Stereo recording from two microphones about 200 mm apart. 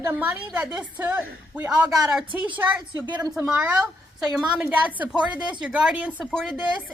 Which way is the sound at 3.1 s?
20° right (ahead or behind).